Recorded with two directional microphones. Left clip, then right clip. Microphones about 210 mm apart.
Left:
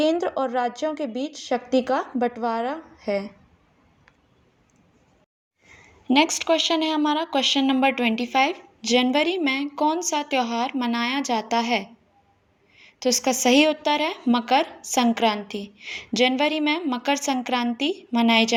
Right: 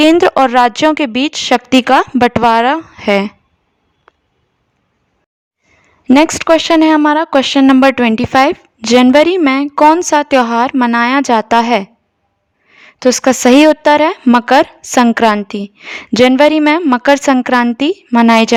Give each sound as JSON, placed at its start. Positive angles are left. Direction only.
{"t": 0.0, "sound": "speech", "side_deg": -40}
{"t": 6.1, "sound": "speech", "side_deg": -40}